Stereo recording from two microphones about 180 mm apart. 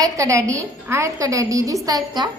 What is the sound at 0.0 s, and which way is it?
A woman's voice, 20° right (ahead or behind).